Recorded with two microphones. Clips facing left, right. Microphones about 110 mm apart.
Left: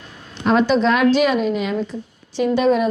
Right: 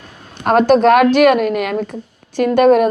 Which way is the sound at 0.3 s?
50° right (ahead or behind).